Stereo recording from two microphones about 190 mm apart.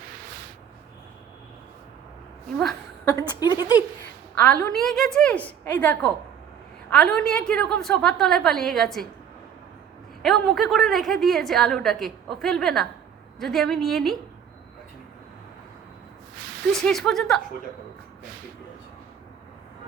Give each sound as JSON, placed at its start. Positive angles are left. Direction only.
{"t": 3.1, "sound": "a woman's voice", "side_deg": 20}
{"t": 4.4, "sound": "a woman's voice", "side_deg": 5}
{"t": 10.2, "sound": "a woman's voice", "side_deg": 0}
{"t": 16.7, "sound": "a woman's voice", "side_deg": 0}